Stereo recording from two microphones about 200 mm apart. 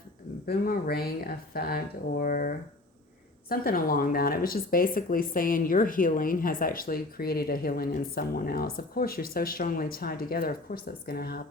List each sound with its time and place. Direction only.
0.4 s speech: 50° left (ahead or behind)